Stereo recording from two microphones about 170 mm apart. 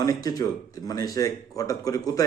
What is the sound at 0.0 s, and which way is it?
A man's voice, 20° left (ahead or behind).